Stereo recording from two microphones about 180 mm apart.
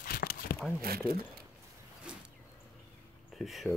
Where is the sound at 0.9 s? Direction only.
55° right (ahead or behind).